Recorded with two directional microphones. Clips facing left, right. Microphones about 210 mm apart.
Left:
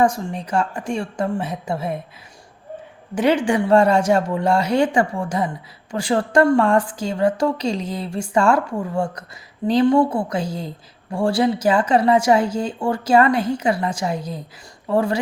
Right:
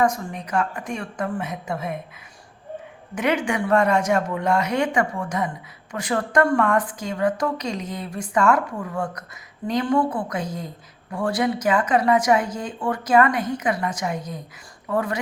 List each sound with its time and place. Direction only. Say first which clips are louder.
0.0 s speech: left 3 dB; 30° left (ahead or behind)
3.2 s speech: left 5 dB; 30° left (ahead or behind)